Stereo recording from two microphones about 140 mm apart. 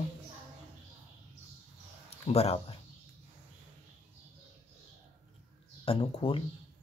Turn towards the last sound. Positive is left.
turn(degrees=40)  # may be behind; listen again after turning